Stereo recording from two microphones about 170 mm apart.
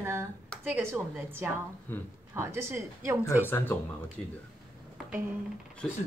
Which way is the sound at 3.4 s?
10° left (ahead or behind).